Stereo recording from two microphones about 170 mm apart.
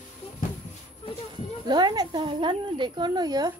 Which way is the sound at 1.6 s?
25° right (ahead or behind).